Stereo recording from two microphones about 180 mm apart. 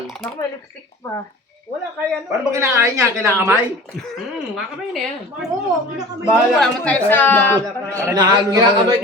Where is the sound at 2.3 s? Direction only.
15° right (ahead or behind).